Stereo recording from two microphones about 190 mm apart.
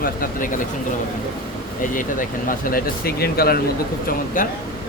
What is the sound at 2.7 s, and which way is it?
Speech, 50° left (ahead or behind).